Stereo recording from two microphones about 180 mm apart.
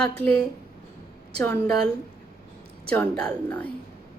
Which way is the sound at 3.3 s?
10° left (ahead or behind).